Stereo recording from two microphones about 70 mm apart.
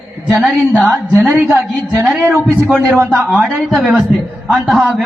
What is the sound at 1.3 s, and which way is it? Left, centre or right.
A man's voice, right.